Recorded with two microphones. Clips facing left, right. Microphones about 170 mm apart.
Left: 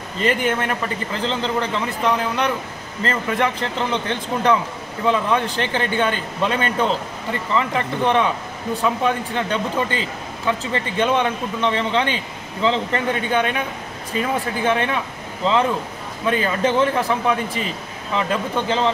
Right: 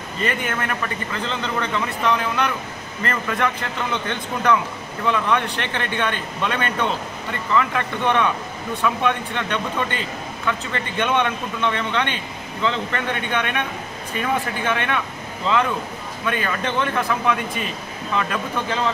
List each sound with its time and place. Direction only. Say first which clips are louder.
0.2 s speech: left 5 dB; 25° left (ahead or behind)
16.3 s speech: left 5 dB; 30° left (ahead or behind)